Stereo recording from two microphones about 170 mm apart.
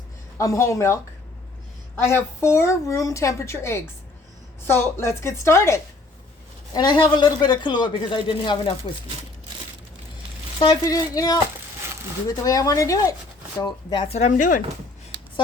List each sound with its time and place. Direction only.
0.3 s speech: 15° left (ahead or behind)
2.0 s a man's voice: 15° left (ahead or behind)
10.6 s a man's voice: 25° left (ahead or behind)
12.4 s a man's voice: 20° left (ahead or behind)
13.6 s speech: 30° left (ahead or behind); by 14.6 s 50° left (ahead or behind)